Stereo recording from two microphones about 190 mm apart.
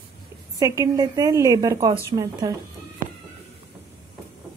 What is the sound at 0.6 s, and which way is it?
A woman's voice, 15° right (ahead or behind).